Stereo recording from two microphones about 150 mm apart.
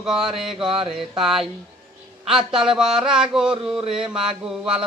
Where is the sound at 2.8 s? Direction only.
5° right (ahead or behind).